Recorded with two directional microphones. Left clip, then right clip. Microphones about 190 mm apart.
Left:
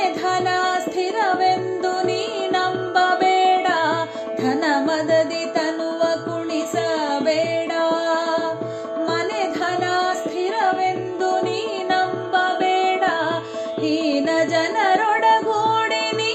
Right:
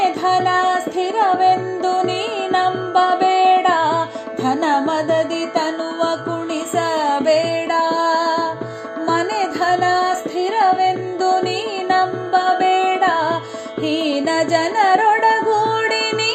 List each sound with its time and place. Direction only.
0.3 s music: 5° right (ahead or behind)
6.7 s music: 15° right (ahead or behind)
9.0 s music: 20° right (ahead or behind)
10.8 s music: 15° right (ahead or behind)